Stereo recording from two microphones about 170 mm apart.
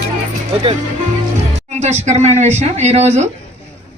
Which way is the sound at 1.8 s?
40° right (ahead or behind).